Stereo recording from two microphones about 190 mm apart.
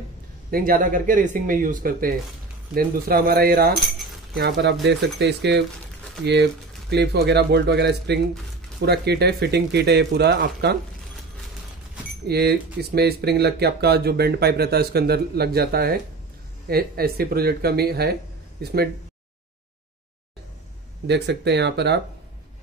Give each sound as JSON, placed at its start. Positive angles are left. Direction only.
{"t": 0.5, "sound": "speech", "side_deg": -45}
{"t": 12.3, "sound": "speech", "side_deg": -55}
{"t": 21.1, "sound": "speech", "side_deg": -65}